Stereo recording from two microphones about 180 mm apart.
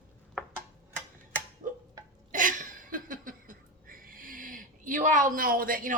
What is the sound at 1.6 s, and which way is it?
Tick-tock, 40° right (ahead or behind).